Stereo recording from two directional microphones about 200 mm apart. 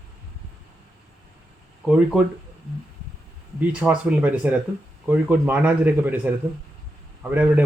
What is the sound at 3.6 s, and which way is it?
Speech, 5° right (ahead or behind).